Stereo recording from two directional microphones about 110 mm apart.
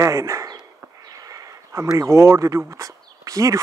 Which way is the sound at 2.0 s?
25° right (ahead or behind).